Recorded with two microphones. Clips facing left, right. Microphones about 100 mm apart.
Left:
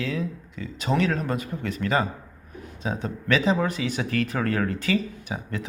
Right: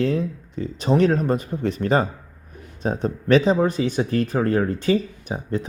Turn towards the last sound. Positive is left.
turn(degrees=-35)  # may be behind; listen again after turning